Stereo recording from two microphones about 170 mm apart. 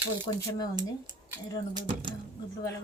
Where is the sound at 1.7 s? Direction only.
25° right (ahead or behind).